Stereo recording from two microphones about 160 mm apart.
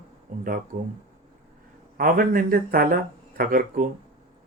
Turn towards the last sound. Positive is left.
turn(degrees=-60)  # may be behind; listen again after turning